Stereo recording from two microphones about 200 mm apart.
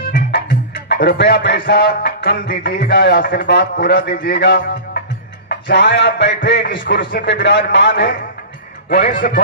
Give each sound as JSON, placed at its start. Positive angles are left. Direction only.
{"t": 0.0, "sound": "music", "side_deg": 45}
{"t": 3.4, "sound": "speech", "side_deg": 60}
{"t": 9.0, "sound": "a man's voice", "side_deg": 45}